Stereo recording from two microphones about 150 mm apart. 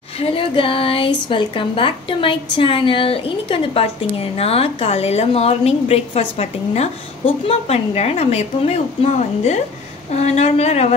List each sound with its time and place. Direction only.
0.2 s a woman's voice: 35° left (ahead or behind)